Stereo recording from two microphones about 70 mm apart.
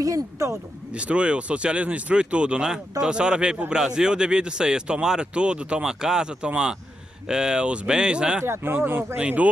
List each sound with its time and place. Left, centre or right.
0.0 s speech: right
0.9 s speech: centre
8.5 s speech: right
9.2 s speech: centre